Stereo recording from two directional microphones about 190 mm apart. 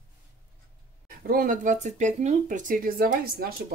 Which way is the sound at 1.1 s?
50° right (ahead or behind).